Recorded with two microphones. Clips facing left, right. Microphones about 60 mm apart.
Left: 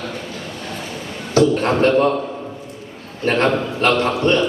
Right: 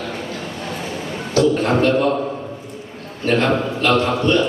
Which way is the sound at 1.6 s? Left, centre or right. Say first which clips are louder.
Left 1 dB; left.